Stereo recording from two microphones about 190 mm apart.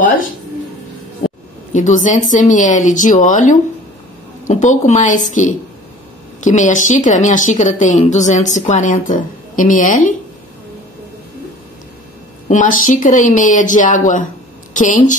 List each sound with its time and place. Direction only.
0.0 s speech: 45° left (ahead or behind)
1.7 s a woman's voice: 40° left (ahead or behind)
12.4 s a woman's voice: 45° left (ahead or behind)